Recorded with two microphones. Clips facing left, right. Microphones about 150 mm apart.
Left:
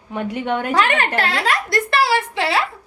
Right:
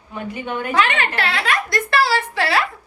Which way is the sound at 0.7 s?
45° left (ahead or behind).